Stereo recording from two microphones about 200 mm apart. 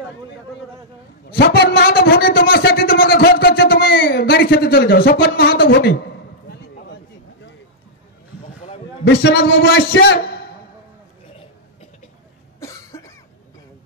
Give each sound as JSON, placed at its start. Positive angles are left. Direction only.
{"t": 1.3, "sound": "a man's voice", "side_deg": 55}
{"t": 2.0, "sound": "a sound", "side_deg": 50}
{"t": 9.0, "sound": "a man's voice", "side_deg": 55}
{"t": 12.5, "sound": "cough", "side_deg": 15}